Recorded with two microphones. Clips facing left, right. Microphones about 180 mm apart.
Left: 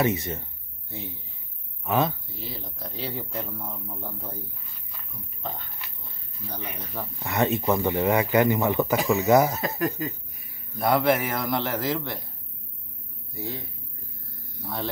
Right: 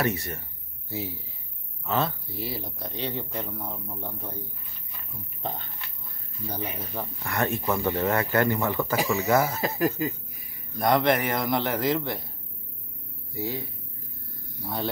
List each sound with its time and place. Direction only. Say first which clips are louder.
0.0 s speech: left 3 dB; 20° left (ahead or behind)
0.8 s speech: right 5 dB; 5° right (ahead or behind)
1.9 s speech: left 3 dB; 15° left (ahead or behind)
2.2 s speech: right 4 dB; 10° right (ahead or behind)
2.8 s a man's voice: even; 5° left (ahead or behind)
6.5 s speech: right 2 dB; 10° right (ahead or behind)
7.2 s speech: left 4 dB; 20° left (ahead or behind)
8.9 s a man's voice: left 4 dB; centre (ahead or behind)
13.3 s speech: right 3 dB; centre (ahead or behind)
14.6 s speech: right 1 dB; centre (ahead or behind)